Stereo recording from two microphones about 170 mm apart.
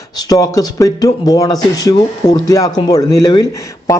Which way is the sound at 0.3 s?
20° left (ahead or behind).